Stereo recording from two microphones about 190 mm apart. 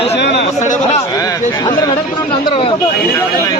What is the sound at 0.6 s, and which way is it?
Speech, 40° left (ahead or behind).